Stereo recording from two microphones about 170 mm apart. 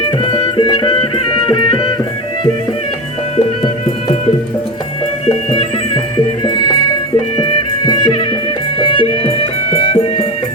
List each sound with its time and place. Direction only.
0.3 s music: 30° left (ahead or behind)
7.3 s music: 25° left (ahead or behind)